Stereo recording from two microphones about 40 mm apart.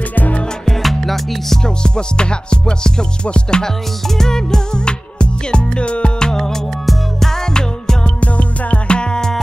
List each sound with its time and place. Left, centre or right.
0.1 s music: left
0.7 s music: centre
1.6 s music: left
6.2 s music: centre
8.2 s music: left